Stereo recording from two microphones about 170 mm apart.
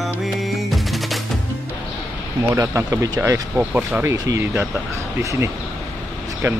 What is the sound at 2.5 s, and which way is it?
Speech, 20° right (ahead or behind).